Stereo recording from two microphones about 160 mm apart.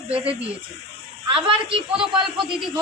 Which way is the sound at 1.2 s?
35° right (ahead or behind).